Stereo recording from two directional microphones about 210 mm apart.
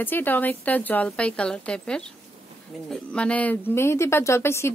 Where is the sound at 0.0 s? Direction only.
10° left (ahead or behind).